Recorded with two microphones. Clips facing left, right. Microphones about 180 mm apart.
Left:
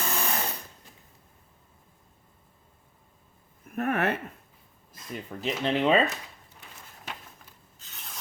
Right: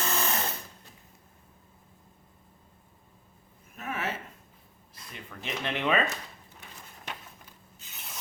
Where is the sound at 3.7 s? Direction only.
60° left (ahead or behind).